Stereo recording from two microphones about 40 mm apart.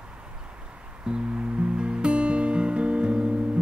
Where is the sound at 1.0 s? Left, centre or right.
Right.